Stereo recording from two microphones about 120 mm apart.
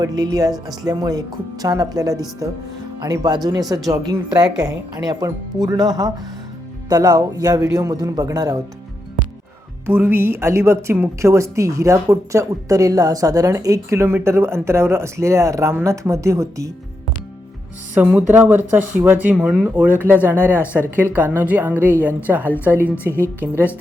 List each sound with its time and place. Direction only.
0.0 s a woman's voice: 30° right (ahead or behind)
9.8 s a woman's voice: 20° right (ahead or behind)
17.9 s speech: 15° right (ahead or behind)